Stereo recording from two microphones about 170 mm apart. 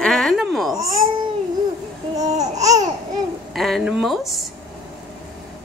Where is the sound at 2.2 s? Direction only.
20° right (ahead or behind).